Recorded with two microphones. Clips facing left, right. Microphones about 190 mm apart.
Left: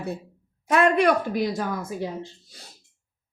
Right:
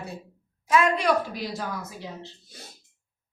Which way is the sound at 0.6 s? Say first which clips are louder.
Left 3 dB; 55° left (ahead or behind).